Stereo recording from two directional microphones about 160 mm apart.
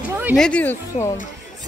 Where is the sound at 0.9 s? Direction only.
45° left (ahead or behind).